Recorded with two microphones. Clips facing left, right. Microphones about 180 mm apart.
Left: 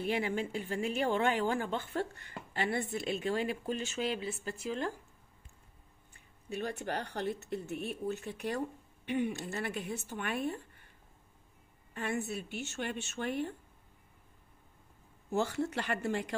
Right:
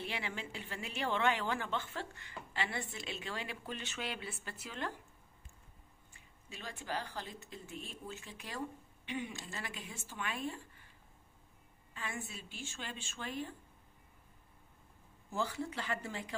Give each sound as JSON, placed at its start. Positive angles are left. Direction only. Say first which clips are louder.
{"t": 0.0, "sound": "speech", "louder": "left 9 dB", "side_deg": 45}
{"t": 6.5, "sound": "speech", "louder": "left 6 dB", "side_deg": 60}
{"t": 11.9, "sound": "speech", "louder": "left 9 dB", "side_deg": 65}
{"t": 15.2, "sound": "speech", "louder": "left 6 dB", "side_deg": 70}